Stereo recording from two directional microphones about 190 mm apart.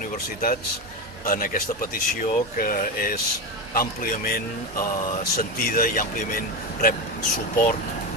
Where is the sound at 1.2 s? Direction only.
50° left (ahead or behind).